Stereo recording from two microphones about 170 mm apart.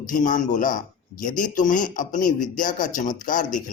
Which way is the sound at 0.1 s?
50° left (ahead or behind).